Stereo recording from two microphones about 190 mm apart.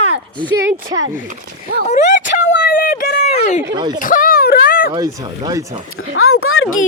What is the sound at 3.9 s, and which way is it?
Speech, 45° left (ahead or behind).